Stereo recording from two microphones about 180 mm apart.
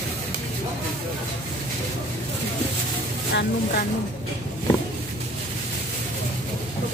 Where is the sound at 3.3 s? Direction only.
60° left (ahead or behind).